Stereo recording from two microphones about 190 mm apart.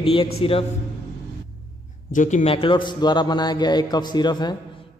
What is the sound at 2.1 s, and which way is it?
A man's voice, 40° left (ahead or behind).